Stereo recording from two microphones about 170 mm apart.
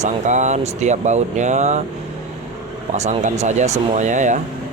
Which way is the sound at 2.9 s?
40° right (ahead or behind).